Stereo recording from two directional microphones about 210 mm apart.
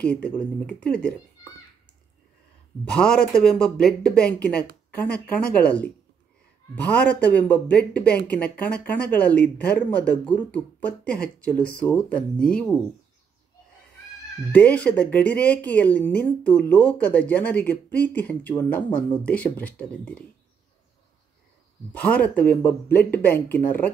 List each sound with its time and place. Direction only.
0.0 s speech: 5° left (ahead or behind)
2.8 s speech: 5° left (ahead or behind)
14.5 s speech: 5° left (ahead or behind)
21.9 s speech: 5° left (ahead or behind)